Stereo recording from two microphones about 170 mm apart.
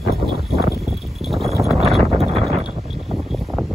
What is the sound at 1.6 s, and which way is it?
Wind noise, centre (ahead or behind).